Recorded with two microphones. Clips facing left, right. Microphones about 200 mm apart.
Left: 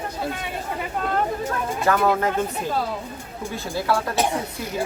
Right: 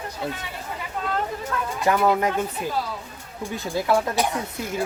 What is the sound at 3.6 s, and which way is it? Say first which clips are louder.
Speech: even; 20° right (ahead or behind).